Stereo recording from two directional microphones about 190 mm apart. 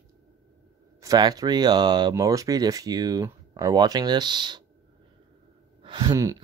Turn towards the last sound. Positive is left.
turn(degrees=-15)  # may be behind; listen again after turning